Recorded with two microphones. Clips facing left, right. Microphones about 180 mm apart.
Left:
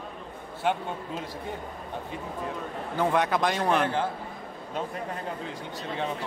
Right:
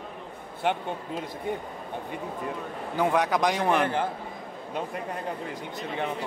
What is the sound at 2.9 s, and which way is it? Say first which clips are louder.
Speech: right 1 dB; 10° right (ahead or behind).